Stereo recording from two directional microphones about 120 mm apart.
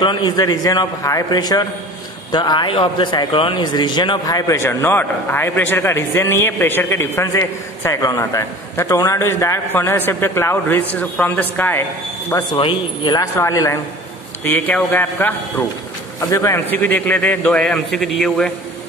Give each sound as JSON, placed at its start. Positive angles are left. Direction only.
{"t": 0.0, "sound": "a man's voice", "side_deg": 40}
{"t": 12.5, "sound": "a man's voice", "side_deg": 45}
{"t": 13.4, "sound": "speech", "side_deg": 25}
{"t": 14.4, "sound": "a man's voice", "side_deg": 15}
{"t": 16.2, "sound": "a man's voice", "side_deg": 25}